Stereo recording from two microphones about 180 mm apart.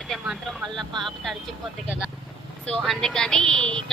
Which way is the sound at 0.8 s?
Centre (ahead or behind).